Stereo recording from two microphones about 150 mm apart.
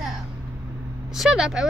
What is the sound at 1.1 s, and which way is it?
Speech, 5° right (ahead or behind).